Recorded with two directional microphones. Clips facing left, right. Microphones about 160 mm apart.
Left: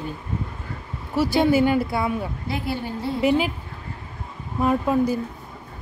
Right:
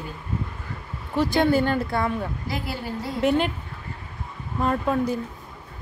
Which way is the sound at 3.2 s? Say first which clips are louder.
Left 1 dB; 5° left (ahead or behind).